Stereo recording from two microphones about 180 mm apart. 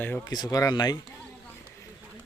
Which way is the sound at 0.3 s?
20° left (ahead or behind).